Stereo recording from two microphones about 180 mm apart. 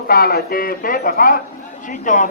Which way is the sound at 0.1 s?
55° left (ahead or behind).